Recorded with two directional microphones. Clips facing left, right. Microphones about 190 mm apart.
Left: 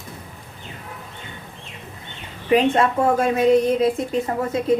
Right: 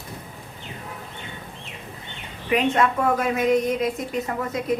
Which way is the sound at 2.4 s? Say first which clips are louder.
Left 4 dB; 30° left (ahead or behind).